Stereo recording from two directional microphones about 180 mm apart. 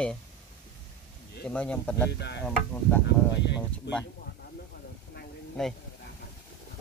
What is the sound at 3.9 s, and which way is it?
Speech, 70° left (ahead or behind).